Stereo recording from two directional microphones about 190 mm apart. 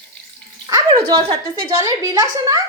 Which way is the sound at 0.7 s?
20° right (ahead or behind).